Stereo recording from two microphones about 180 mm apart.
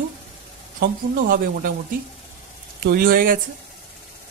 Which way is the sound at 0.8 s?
55° right (ahead or behind).